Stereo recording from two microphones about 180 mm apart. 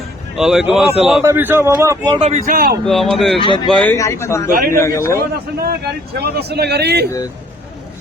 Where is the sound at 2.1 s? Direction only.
30° right (ahead or behind).